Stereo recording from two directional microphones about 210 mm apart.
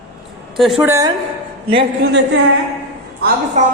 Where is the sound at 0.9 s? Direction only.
15° right (ahead or behind).